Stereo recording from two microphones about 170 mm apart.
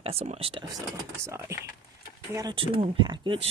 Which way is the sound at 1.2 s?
15° right (ahead or behind).